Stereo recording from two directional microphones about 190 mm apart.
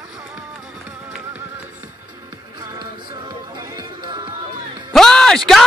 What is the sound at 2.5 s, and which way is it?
Music, 20° right (ahead or behind).